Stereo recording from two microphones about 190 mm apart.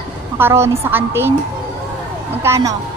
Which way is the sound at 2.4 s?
15° right (ahead or behind).